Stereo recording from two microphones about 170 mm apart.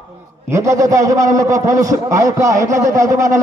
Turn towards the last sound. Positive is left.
turn(degrees=-20)  # may be behind; listen again after turning